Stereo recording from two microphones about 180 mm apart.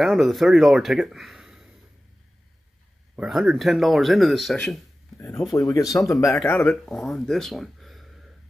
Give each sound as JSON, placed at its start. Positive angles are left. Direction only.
{"t": 0.0, "sound": "speech", "side_deg": 0}
{"t": 3.2, "sound": "speech", "side_deg": 0}
{"t": 5.1, "sound": "a sound", "side_deg": 10}
{"t": 5.5, "sound": "speech", "side_deg": 20}
{"t": 6.1, "sound": "speech", "side_deg": 0}